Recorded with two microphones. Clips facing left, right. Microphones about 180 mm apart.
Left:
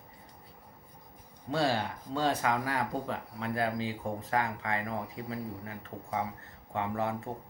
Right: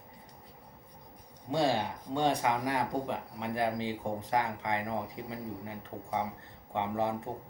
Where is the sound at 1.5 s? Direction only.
15° right (ahead or behind).